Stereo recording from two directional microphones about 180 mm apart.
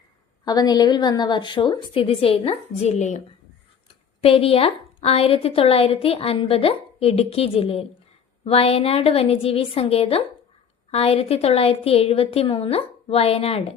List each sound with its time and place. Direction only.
0.4 s a woman's voice: 20° left (ahead or behind); by 3.2 s 40° left (ahead or behind)
4.2 s a woman's voice: 30° left (ahead or behind)